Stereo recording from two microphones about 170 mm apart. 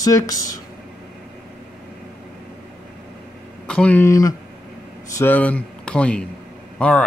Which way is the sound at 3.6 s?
5° left (ahead or behind).